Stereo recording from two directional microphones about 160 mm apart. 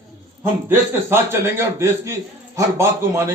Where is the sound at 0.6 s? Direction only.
15° right (ahead or behind).